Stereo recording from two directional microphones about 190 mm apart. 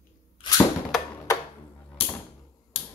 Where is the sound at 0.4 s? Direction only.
20° left (ahead or behind).